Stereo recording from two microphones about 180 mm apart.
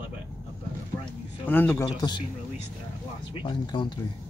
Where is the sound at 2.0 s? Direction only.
25° left (ahead or behind).